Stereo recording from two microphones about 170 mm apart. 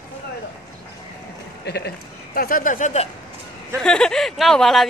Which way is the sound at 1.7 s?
70° left (ahead or behind).